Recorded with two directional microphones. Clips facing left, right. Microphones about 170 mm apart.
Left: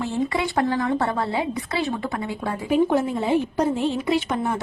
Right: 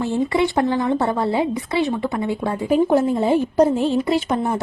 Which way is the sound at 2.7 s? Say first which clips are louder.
Right 3 dB; 35° right (ahead or behind).